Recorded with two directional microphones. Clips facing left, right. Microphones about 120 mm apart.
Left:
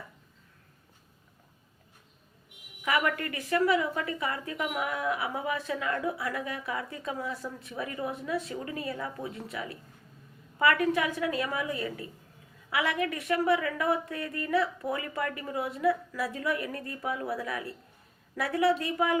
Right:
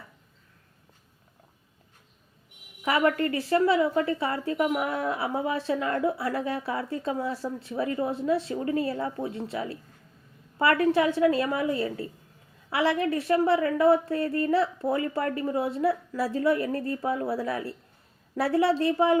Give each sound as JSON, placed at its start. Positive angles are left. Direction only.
{"t": 2.8, "sound": "a woman's voice", "side_deg": -30}